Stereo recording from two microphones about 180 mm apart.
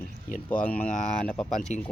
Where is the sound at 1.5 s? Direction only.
40° left (ahead or behind).